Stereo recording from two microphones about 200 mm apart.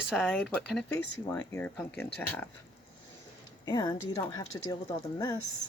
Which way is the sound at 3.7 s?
20° left (ahead or behind).